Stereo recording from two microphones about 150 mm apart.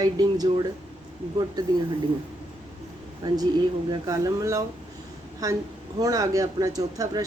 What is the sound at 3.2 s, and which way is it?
Speech, 25° right (ahead or behind).